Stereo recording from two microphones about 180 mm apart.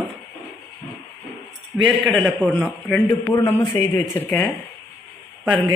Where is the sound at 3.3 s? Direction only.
20° left (ahead or behind).